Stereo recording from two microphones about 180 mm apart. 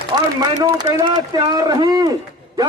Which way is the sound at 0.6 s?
20° right (ahead or behind).